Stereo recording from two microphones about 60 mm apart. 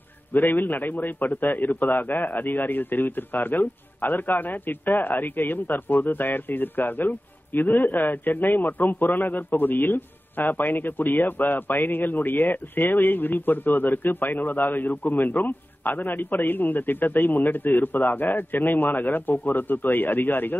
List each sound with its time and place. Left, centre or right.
0.3 s a man's voice: left